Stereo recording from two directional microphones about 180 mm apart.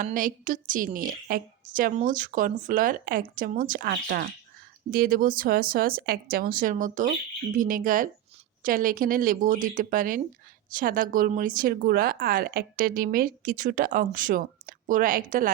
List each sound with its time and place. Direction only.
0.0 s a woman's voice: 50° right (ahead or behind)